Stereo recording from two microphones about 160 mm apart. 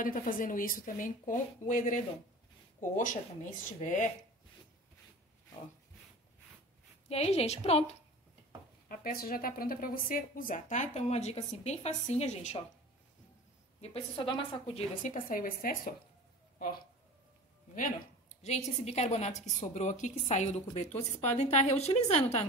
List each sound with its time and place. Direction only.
0.0 s a woman's voice: 55° left (ahead or behind)
7.1 s a woman's voice: 40° left (ahead or behind)
8.8 s a woman's voice: 65° left (ahead or behind); by 12.6 s 45° left (ahead or behind)
13.7 s a woman's voice: 40° left (ahead or behind)
15.0 s a woman's voice: 60° left (ahead or behind)
18.9 s a woman's voice: 45° left (ahead or behind)